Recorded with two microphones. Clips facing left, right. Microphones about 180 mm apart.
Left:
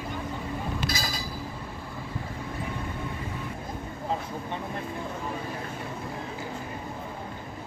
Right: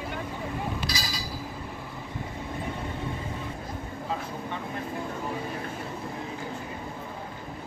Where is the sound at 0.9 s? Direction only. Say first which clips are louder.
Left 2 dB; 50° left (ahead or behind).